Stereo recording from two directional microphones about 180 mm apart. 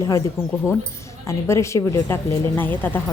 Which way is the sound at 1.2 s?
15° left (ahead or behind).